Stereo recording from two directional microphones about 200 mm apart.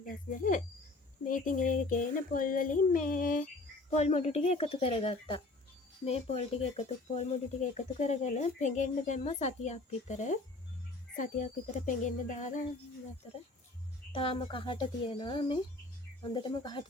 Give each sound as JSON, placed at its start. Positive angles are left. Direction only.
{"t": 0.0, "sound": "cricket", "side_deg": 40}
{"t": 1.2, "sound": "child singing", "side_deg": 40}
{"t": 3.9, "sound": "speech", "side_deg": 35}
{"t": 14.1, "sound": "speech", "side_deg": 25}